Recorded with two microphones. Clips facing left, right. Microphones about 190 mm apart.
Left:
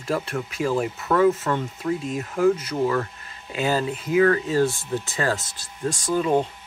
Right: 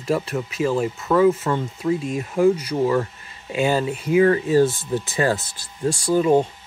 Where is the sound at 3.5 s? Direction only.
10° right (ahead or behind).